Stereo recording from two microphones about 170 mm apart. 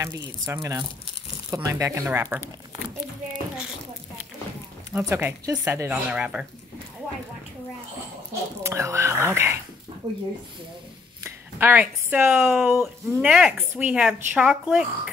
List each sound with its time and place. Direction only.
0.0 s speech: 15° right (ahead or behind)
4.9 s speech: 15° right (ahead or behind)
8.6 s speech: 15° right (ahead or behind)
11.2 s a woman's voice: 10° right (ahead or behind)